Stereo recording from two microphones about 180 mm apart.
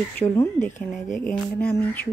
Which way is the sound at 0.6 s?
45° left (ahead or behind).